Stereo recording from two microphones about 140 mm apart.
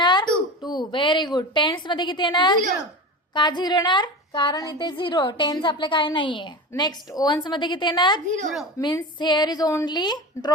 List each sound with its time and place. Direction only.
0.0 s a sound: 30° left (ahead or behind)
3.3 s a woman's voice: 30° left (ahead or behind)
8.8 s speech: 20° left (ahead or behind)
9.1 s a woman's voice: 35° left (ahead or behind)